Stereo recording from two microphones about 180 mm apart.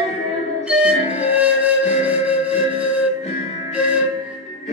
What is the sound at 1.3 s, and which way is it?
Music, 5° right (ahead or behind).